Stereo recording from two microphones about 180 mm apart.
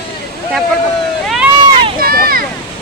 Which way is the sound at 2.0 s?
55° right (ahead or behind).